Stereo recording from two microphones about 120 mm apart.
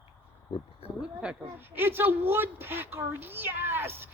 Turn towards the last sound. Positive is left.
turn(degrees=-20)  # may be behind; listen again after turning